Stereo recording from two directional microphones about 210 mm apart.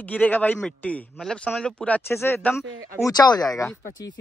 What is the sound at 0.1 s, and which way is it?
A man's voice, 5° left (ahead or behind).